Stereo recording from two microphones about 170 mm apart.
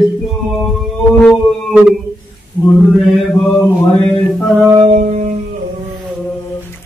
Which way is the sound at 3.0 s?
5° left (ahead or behind).